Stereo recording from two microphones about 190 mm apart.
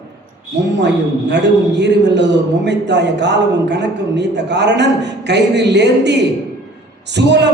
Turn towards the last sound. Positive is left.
turn(degrees=-65)  # may be behind; listen again after turning